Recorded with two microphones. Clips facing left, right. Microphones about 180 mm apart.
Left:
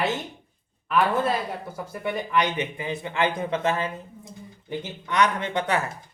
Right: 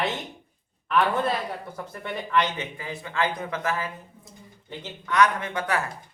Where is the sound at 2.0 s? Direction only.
15° left (ahead or behind).